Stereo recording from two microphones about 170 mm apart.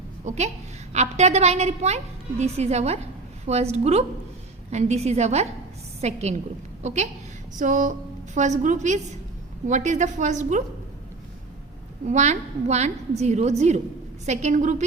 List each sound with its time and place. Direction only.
0.3 s a woman's voice: 40° right (ahead or behind)
12.0 s a woman's voice: 40° right (ahead or behind)